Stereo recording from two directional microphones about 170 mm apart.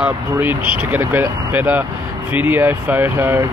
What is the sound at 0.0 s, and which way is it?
Speech, 10° right (ahead or behind).